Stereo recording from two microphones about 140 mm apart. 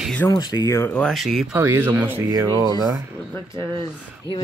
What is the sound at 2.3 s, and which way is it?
Speech, 30° right (ahead or behind).